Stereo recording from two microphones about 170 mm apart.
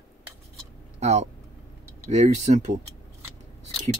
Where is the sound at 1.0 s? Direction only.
40° right (ahead or behind).